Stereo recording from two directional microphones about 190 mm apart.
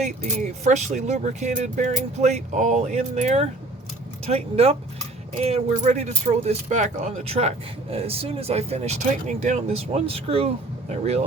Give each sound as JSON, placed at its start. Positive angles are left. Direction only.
{"t": 0.6, "sound": "speech", "side_deg": -40}